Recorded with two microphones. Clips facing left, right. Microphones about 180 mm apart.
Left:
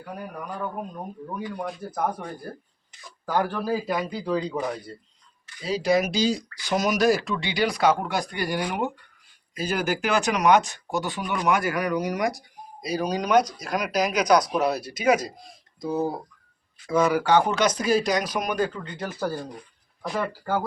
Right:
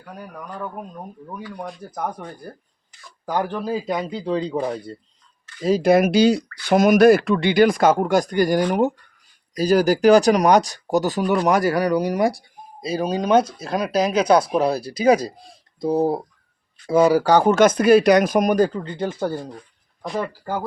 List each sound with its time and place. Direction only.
0.0 s speech: 5° left (ahead or behind)
1.6 s speech: centre (ahead or behind)
3.2 s speech: 20° right (ahead or behind)
5.5 s speech: 50° right (ahead or behind); by 19.5 s 25° right (ahead or behind)
20.1 s speech: 10° right (ahead or behind)